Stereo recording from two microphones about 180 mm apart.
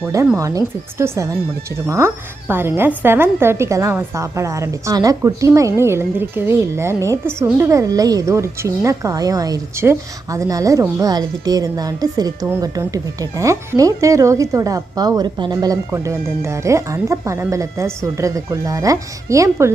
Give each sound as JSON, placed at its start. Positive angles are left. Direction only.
{"t": 0.3, "sound": "a woman's voice", "side_deg": -20}